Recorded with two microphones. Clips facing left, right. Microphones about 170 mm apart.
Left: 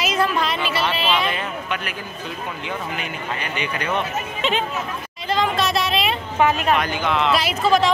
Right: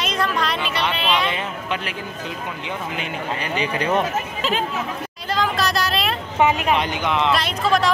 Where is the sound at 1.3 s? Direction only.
30° right (ahead or behind).